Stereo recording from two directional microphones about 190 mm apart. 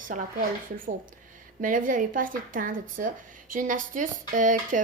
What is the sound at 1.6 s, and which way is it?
Speech, 45° right (ahead or behind).